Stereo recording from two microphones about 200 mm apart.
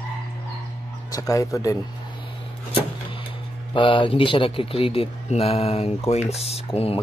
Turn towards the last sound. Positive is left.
turn(degrees=30)  # may be behind; listen again after turning